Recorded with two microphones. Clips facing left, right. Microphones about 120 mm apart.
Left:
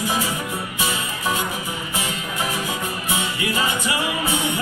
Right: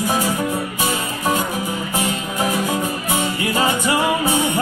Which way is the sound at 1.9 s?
45° right (ahead or behind).